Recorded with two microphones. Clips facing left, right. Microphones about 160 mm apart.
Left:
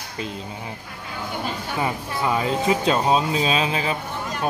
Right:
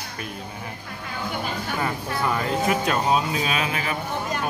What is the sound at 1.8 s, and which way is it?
Speech, 15° left (ahead or behind).